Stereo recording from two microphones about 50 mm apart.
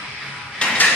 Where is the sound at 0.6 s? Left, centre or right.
Left.